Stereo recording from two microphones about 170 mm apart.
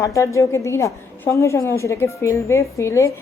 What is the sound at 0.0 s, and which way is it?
A woman's voice, 20° left (ahead or behind).